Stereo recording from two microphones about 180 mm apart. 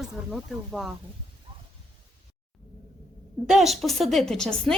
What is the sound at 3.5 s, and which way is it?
Speech, centre (ahead or behind).